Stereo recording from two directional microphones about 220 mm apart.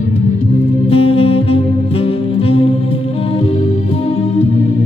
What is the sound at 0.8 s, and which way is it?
Saxophone, 25° left (ahead or behind).